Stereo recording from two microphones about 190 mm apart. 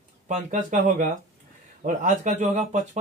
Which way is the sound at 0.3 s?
40° right (ahead or behind).